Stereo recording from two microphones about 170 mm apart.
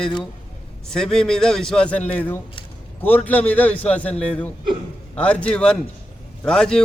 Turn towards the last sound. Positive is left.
turn(degrees=5)  # may be behind; listen again after turning